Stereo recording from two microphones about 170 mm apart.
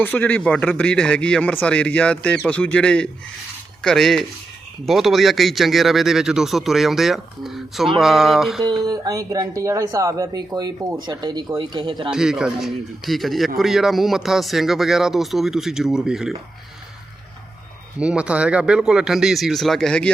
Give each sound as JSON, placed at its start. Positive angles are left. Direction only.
{"t": 0.0, "sound": "speech", "side_deg": 10}
{"t": 8.6, "sound": "speech", "side_deg": -20}
{"t": 12.1, "sound": "speech", "side_deg": -5}
{"t": 18.0, "sound": "speech", "side_deg": -5}